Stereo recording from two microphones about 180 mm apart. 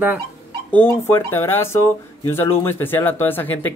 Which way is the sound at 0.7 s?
10° left (ahead or behind).